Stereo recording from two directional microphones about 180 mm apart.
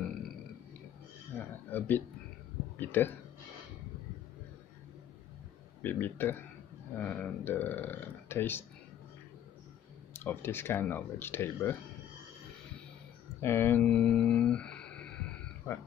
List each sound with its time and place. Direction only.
1.7 s speech: 10° left (ahead or behind)
5.8 s speech: 10° left (ahead or behind)
10.1 s speech: 15° left (ahead or behind)
13.4 s a sound: 15° left (ahead or behind)